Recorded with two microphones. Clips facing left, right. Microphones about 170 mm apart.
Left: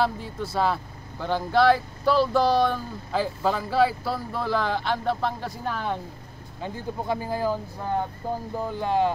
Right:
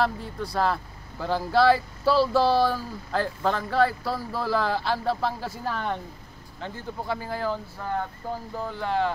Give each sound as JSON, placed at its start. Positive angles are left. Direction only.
{"t": 0.0, "sound": "speech", "side_deg": 0}
{"t": 6.6, "sound": "speech", "side_deg": 15}